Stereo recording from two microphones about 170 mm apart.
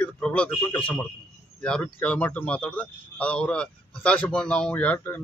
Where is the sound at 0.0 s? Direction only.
5° left (ahead or behind).